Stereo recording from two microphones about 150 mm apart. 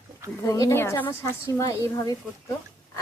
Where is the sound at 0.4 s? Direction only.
25° left (ahead or behind).